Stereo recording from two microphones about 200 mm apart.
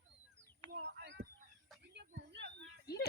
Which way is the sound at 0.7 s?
60° right (ahead or behind).